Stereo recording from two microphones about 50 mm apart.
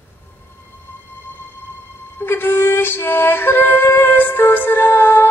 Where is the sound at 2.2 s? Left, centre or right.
Left.